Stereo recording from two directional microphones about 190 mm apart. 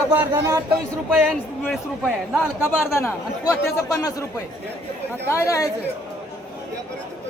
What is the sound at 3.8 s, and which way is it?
Speech, 15° left (ahead or behind).